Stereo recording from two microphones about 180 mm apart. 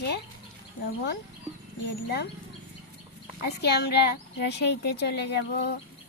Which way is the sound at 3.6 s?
65° left (ahead or behind).